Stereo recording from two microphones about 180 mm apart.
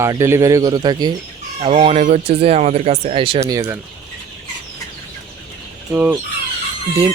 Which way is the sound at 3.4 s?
20° right (ahead or behind).